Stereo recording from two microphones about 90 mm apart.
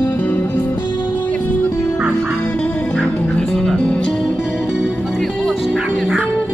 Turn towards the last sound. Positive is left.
turn(degrees=5)  # may be behind; listen again after turning